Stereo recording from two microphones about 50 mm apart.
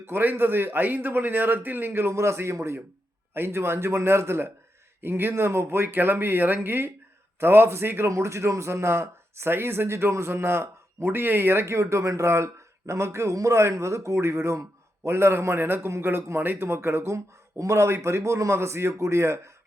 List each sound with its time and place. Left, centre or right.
0.0 s a man's voice: right
3.3 s a man's voice: right
8.1 s speech: right
11.6 s a man's voice: right
17.6 s speech: right